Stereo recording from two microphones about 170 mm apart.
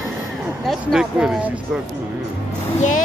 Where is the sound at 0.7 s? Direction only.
5° right (ahead or behind).